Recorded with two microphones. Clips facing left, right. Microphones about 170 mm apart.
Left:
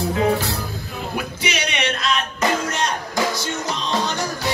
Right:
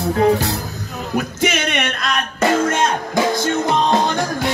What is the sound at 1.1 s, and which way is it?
Speech, 50° right (ahead or behind).